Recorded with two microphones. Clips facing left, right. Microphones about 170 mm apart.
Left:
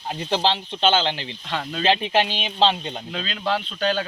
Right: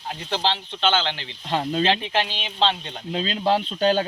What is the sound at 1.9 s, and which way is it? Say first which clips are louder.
Speech: left 3 dB; 15° left (ahead or behind).